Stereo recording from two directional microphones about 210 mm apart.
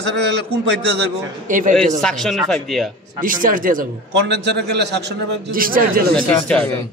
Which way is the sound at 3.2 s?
40° right (ahead or behind).